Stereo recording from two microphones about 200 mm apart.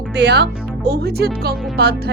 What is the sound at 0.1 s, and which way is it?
A woman's voice, 55° right (ahead or behind).